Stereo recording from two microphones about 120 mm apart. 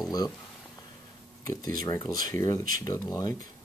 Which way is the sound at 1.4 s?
30° left (ahead or behind).